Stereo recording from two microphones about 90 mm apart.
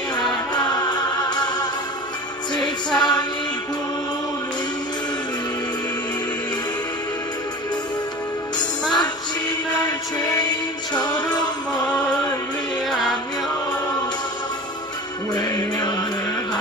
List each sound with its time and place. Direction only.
0.1 s music: 50° left (ahead or behind)
3.0 s music: 50° left (ahead or behind)
8.5 s music: 55° left (ahead or behind)
10.4 s music: 55° left (ahead or behind)
15.3 s music: 45° left (ahead or behind)